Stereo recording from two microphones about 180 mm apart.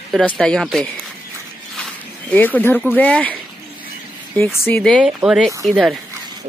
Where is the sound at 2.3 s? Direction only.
10° left (ahead or behind).